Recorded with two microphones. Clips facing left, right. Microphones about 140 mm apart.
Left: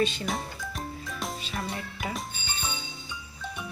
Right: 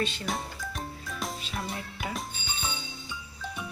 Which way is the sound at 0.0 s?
Centre (ahead or behind).